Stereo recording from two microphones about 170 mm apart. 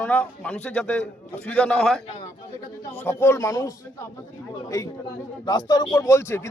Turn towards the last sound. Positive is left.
turn(degrees=15)  # may be behind; listen again after turning